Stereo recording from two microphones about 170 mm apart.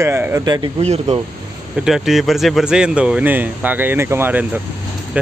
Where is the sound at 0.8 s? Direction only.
40° right (ahead or behind).